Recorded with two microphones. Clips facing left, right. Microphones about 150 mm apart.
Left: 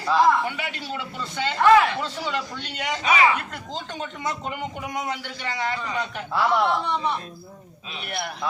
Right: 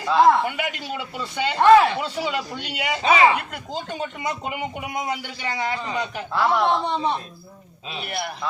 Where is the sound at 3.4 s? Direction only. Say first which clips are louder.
Right 2 dB; 10° right (ahead or behind).